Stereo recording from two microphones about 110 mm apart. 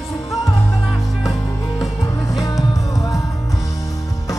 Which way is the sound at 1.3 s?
30° left (ahead or behind).